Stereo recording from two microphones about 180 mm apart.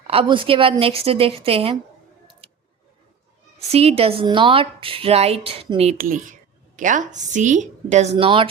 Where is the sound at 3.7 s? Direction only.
35° right (ahead or behind).